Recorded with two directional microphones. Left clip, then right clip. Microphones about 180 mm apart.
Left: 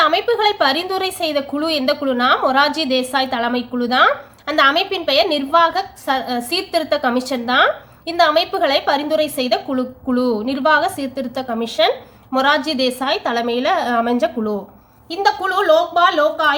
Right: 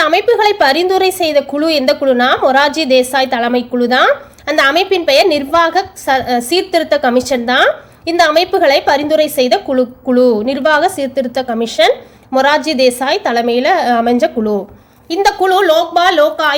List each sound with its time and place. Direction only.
0.0 s a woman's voice: 25° right (ahead or behind)